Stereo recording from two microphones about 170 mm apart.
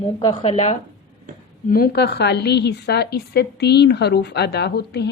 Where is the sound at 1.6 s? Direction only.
60° left (ahead or behind).